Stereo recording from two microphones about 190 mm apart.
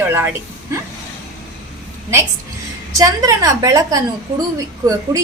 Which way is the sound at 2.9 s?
20° right (ahead or behind).